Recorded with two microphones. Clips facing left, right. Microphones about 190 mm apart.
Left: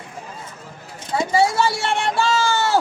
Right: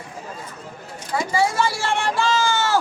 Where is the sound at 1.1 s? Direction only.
25° left (ahead or behind).